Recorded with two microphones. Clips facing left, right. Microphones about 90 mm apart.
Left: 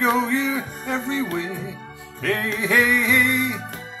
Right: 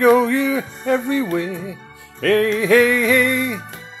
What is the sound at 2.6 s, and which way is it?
Music, 20° left (ahead or behind).